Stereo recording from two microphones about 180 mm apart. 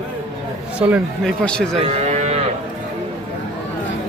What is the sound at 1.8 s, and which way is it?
Moo, 35° right (ahead or behind).